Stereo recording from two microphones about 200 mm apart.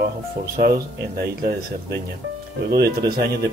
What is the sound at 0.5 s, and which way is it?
Speech, 50° right (ahead or behind).